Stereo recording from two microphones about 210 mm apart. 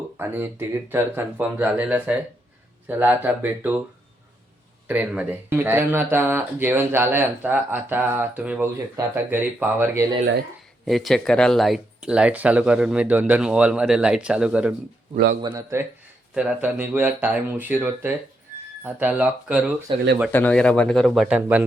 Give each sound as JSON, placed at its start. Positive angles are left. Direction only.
{"t": 0.2, "sound": "speech", "side_deg": -10}
{"t": 4.9, "sound": "speech", "side_deg": -5}
{"t": 10.8, "sound": "speech", "side_deg": 0}
{"t": 15.4, "sound": "speech", "side_deg": -20}
{"t": 20.3, "sound": "speech", "side_deg": 5}